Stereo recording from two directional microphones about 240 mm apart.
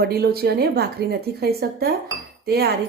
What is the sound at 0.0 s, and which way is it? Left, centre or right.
A woman's voice, right.